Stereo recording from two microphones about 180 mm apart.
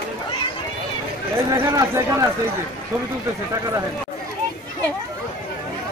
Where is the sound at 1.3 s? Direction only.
15° right (ahead or behind).